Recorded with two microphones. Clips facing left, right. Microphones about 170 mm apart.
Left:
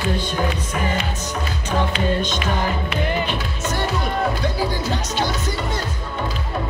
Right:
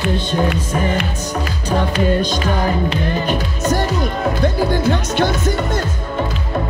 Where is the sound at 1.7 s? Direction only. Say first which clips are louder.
Right 4 dB; 35° right (ahead or behind).